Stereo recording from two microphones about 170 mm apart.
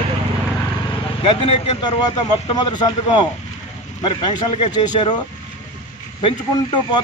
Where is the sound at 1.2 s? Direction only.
35° left (ahead or behind).